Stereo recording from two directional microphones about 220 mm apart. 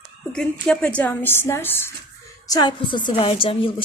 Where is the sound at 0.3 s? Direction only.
5° left (ahead or behind).